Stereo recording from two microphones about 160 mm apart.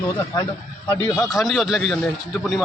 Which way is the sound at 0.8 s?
20° left (ahead or behind).